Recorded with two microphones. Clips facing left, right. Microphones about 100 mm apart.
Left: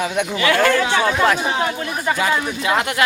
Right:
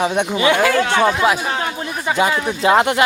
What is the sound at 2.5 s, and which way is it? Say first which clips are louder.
Speech: right 6 dB; 30° right (ahead or behind).